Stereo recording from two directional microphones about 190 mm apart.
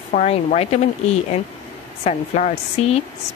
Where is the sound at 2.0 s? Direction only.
35° left (ahead or behind).